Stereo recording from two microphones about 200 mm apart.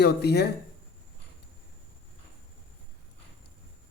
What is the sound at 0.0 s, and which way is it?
Speech, 55° left (ahead or behind).